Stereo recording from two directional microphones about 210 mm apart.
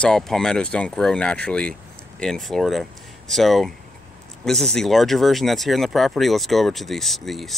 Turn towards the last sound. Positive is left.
turn(degrees=0)  # may be behind; listen again after turning